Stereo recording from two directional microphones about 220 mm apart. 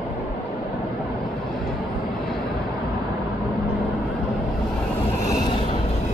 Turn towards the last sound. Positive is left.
turn(degrees=20)  # may be behind; listen again after turning